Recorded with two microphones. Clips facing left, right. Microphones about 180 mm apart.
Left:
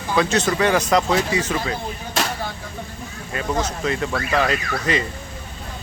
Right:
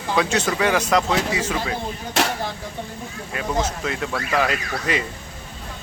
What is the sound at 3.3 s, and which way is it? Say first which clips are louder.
Speech: even; 5° right (ahead or behind).